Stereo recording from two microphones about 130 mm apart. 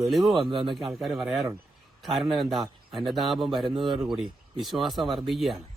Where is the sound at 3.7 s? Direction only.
40° right (ahead or behind).